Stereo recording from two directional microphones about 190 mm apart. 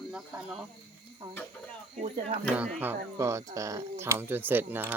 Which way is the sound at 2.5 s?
10° right (ahead or behind).